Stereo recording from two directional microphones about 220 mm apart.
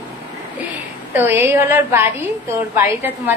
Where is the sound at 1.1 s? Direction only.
10° right (ahead or behind).